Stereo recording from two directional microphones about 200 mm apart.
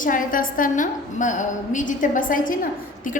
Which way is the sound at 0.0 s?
40° left (ahead or behind).